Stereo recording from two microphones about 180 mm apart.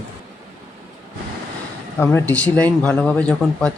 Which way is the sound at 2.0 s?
10° left (ahead or behind).